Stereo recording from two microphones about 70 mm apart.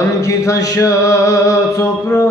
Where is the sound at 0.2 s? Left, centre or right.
Left.